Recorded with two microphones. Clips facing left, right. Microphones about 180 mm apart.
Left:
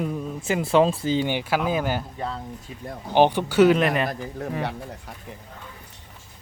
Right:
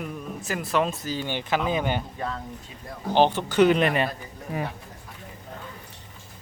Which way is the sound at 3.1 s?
15° left (ahead or behind).